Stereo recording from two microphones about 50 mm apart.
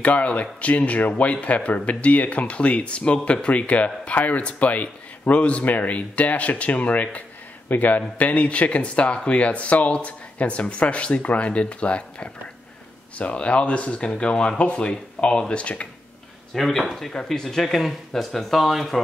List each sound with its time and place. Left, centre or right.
0.0 s a man's voice: left
16.5 s speech: centre